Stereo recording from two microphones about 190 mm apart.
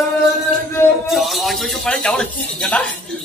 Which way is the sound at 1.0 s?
Centre (ahead or behind).